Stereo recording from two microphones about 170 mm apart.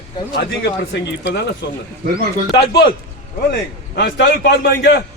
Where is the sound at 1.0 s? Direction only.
90° left.